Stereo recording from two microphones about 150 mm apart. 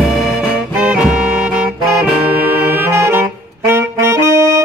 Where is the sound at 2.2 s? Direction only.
15° right (ahead or behind).